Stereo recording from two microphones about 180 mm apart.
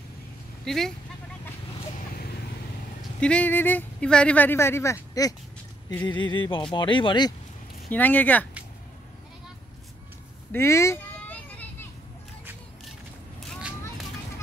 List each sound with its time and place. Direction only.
0.7 s speech: centre (ahead or behind)
1.8 s vehicle: 35° left (ahead or behind)
3.2 s speech: 5° left (ahead or behind); by 7.3 s 25° left (ahead or behind)
7.9 s speech: 10° left (ahead or behind)
10.5 s children playing: 15° left (ahead or behind)